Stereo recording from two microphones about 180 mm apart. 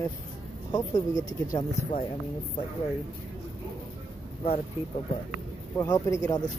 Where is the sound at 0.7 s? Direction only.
20° left (ahead or behind).